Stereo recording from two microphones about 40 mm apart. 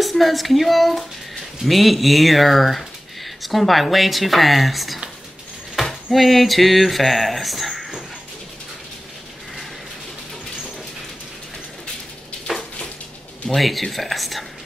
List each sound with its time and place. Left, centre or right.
0.0 s speech: centre
6.1 s speech: centre
13.5 s speech: centre